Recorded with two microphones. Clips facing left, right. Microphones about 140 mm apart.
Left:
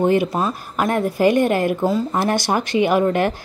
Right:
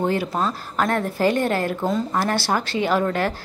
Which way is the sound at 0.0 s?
20° left (ahead or behind).